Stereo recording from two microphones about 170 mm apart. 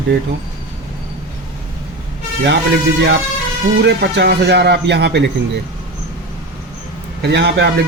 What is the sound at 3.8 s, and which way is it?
Speech, 75° right (ahead or behind).